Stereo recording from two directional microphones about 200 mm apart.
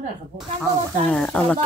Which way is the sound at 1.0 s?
5° left (ahead or behind).